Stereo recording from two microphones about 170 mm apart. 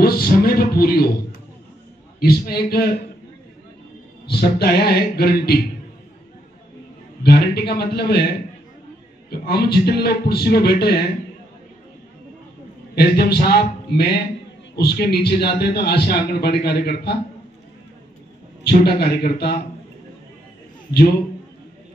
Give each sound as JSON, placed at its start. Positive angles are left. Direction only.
{"t": 0.0, "sound": "a sound", "side_deg": 65}
{"t": 2.1, "sound": "a man's voice", "side_deg": 65}
{"t": 4.3, "sound": "a man's voice", "side_deg": 70}
{"t": 7.2, "sound": "a man's voice", "side_deg": 70}
{"t": 9.3, "sound": "a man's voice", "side_deg": 70}
{"t": 12.9, "sound": "a man's voice", "side_deg": 65}
{"t": 18.6, "sound": "a man's voice", "side_deg": 70}